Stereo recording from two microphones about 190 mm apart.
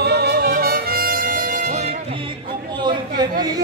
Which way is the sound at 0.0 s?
60° right (ahead or behind).